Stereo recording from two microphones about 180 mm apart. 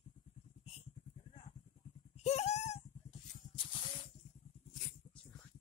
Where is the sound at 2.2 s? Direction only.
35° left (ahead or behind).